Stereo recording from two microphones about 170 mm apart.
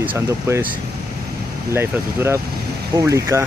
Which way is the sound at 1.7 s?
15° right (ahead or behind).